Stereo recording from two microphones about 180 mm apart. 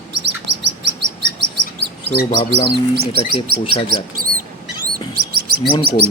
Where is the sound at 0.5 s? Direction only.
75° right (ahead or behind).